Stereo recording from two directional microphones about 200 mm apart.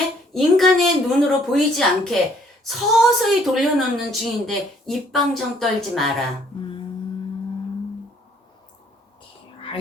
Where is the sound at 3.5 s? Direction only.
Centre (ahead or behind).